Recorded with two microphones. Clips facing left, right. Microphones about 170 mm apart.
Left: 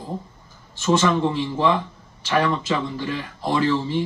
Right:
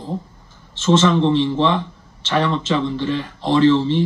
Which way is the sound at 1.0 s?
5° left (ahead or behind).